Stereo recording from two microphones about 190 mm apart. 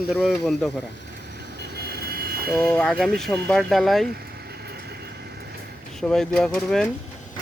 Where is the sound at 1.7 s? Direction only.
55° right (ahead or behind).